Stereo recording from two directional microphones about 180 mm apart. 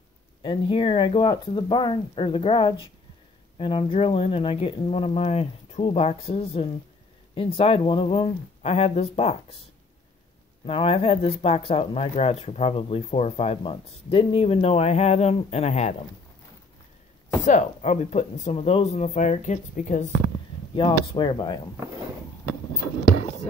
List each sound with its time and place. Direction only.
0.4 s speech: 30° left (ahead or behind)
10.6 s speech: 30° left (ahead or behind)
17.5 s speech: 40° left (ahead or behind)
20.7 s speech: 30° left (ahead or behind)